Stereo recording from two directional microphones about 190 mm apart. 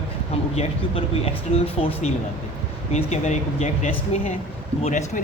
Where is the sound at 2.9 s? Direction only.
35° left (ahead or behind).